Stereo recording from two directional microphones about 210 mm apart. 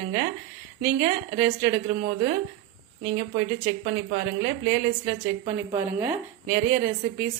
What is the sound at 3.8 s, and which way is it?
Speech, 35° right (ahead or behind).